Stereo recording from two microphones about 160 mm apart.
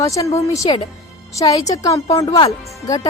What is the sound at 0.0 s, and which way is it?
Speech, 20° left (ahead or behind).